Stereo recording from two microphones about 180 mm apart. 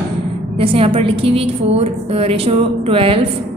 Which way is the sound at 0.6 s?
30° right (ahead or behind).